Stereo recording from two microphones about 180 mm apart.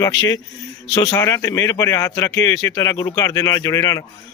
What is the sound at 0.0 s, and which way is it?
A man's voice, 20° left (ahead or behind).